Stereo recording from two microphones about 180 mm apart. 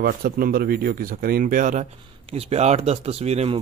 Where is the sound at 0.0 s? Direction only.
55° right (ahead or behind).